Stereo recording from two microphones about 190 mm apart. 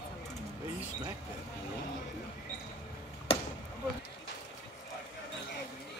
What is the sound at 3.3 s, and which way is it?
Chop, 30° left (ahead or behind).